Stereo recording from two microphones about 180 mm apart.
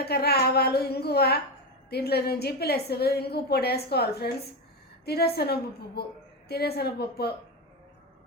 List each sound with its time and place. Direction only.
0.0 s a woman's voice: 60° left (ahead or behind)